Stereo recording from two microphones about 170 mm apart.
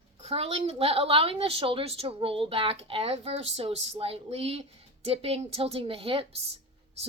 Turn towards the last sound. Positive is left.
turn(degrees=-35)  # may be behind; listen again after turning